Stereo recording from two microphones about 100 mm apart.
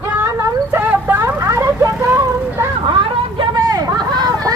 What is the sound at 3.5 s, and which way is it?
Hubbub, 40° right (ahead or behind).